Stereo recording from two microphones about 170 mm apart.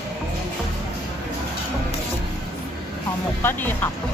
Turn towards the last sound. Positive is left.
turn(degrees=10)  # may be behind; listen again after turning